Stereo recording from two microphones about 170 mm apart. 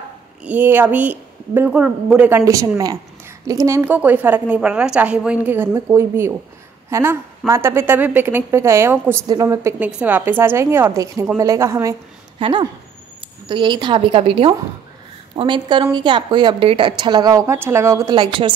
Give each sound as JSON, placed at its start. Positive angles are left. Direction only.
{"t": 0.4, "sound": "a woman's voice", "side_deg": -10}
{"t": 12.4, "sound": "a woman's voice", "side_deg": -30}